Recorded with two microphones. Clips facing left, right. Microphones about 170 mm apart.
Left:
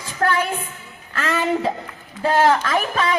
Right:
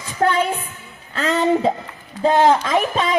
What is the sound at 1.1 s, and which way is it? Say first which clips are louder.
Speech: right 4 dB; 20° right (ahead or behind).